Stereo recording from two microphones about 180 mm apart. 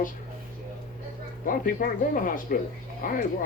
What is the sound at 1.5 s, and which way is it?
Speech, 50° left (ahead or behind).